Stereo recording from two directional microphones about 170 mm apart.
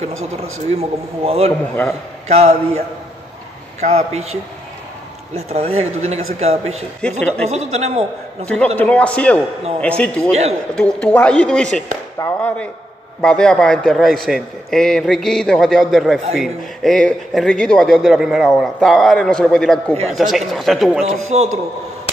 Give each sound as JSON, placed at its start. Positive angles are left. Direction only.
{"t": 0.4, "sound": "a man's voice", "side_deg": -35}
{"t": 3.8, "sound": "a man's voice", "side_deg": -40}
{"t": 5.3, "sound": "a man's voice", "side_deg": -40}
{"t": 7.0, "sound": "a man's voice", "side_deg": 5}
{"t": 7.4, "sound": "a man's voice", "side_deg": -40}
{"t": 8.7, "sound": "a man's voice", "side_deg": 10}
{"t": 21.0, "sound": "a man's voice", "side_deg": -40}